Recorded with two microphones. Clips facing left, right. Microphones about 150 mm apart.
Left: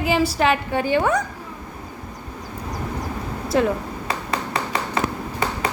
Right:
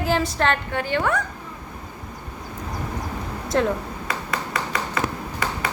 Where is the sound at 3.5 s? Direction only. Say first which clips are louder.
Left 2 dB; 5° left (ahead or behind).